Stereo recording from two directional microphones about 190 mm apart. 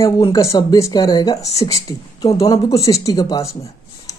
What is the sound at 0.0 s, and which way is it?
Speech, 15° left (ahead or behind).